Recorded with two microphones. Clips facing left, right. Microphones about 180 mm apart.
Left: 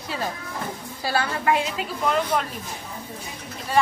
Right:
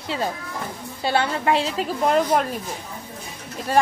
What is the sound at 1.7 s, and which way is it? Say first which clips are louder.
Speech: right 4 dB; 40° right (ahead or behind).